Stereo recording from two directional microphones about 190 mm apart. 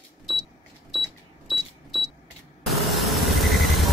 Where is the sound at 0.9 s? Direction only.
Centre (ahead or behind).